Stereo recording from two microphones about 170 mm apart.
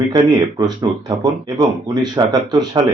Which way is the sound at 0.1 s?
25° right (ahead or behind).